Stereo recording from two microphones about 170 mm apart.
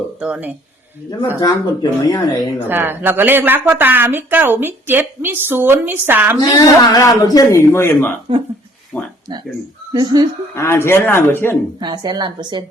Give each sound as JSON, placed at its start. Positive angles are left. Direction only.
{"t": 0.2, "sound": "speech", "side_deg": -10}
{"t": 1.4, "sound": "a man's voice", "side_deg": 20}
{"t": 2.6, "sound": "speech", "side_deg": -10}
{"t": 6.5, "sound": "a man's voice", "side_deg": 20}
{"t": 8.9, "sound": "a sound", "side_deg": 15}
{"t": 9.9, "sound": "a woman's voice", "side_deg": -25}
{"t": 10.5, "sound": "speech", "side_deg": 15}
{"t": 11.8, "sound": "a woman's voice", "side_deg": -25}